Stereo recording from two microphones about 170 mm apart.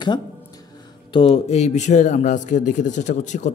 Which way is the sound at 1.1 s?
35° left (ahead or behind).